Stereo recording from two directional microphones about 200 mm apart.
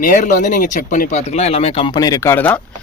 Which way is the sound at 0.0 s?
40° left (ahead or behind).